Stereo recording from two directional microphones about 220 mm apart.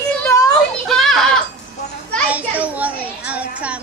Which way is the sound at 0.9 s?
Centre (ahead or behind).